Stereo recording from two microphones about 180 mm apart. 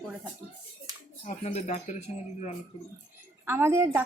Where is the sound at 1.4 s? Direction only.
40° left (ahead or behind).